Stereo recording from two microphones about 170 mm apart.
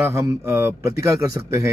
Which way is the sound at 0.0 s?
15° right (ahead or behind).